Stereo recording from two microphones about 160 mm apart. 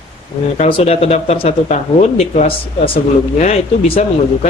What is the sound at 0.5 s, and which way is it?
Speech, 40° left (ahead or behind).